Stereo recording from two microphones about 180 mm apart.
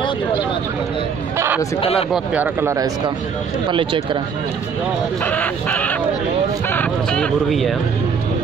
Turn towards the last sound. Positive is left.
turn(degrees=5)  # may be behind; listen again after turning